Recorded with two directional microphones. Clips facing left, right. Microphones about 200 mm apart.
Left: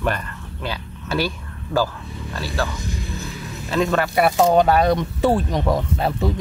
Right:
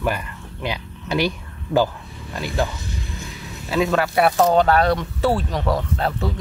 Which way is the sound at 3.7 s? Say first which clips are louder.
Even; 5° right (ahead or behind).